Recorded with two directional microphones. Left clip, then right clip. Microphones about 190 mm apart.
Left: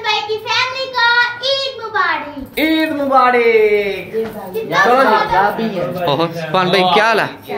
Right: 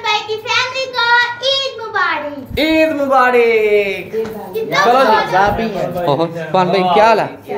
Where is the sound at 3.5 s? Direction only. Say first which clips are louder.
Left 1 dB; 25° right (ahead or behind).